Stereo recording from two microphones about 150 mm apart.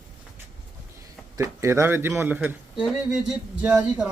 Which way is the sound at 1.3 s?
20° right (ahead or behind).